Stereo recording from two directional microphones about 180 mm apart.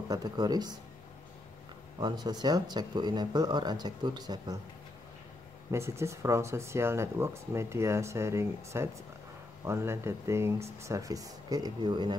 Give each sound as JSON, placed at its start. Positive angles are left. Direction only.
{"t": 0.1, "sound": "speech", "side_deg": -20}
{"t": 2.0, "sound": "speech", "side_deg": -25}
{"t": 5.7, "sound": "speech", "side_deg": -15}